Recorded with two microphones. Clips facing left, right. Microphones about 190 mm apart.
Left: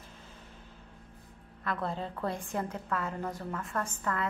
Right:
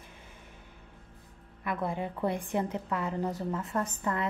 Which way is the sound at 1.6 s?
15° right (ahead or behind).